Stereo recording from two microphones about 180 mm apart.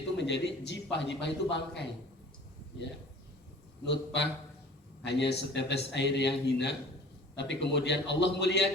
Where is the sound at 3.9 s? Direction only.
75° left (ahead or behind).